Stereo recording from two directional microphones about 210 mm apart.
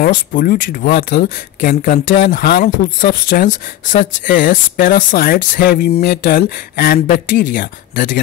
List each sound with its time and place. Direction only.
0.0 s speech: 45° left (ahead or behind)